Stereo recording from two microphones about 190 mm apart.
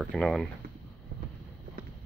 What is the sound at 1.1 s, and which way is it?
Boat, 50° right (ahead or behind).